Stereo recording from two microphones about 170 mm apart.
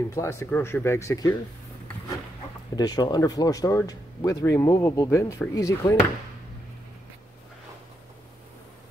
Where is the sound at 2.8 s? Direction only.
25° left (ahead or behind).